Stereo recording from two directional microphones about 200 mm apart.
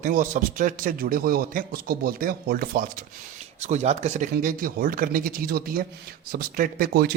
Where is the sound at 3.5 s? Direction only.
35° right (ahead or behind).